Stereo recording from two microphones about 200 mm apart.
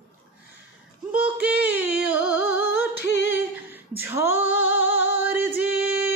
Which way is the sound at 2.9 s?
60° left (ahead or behind).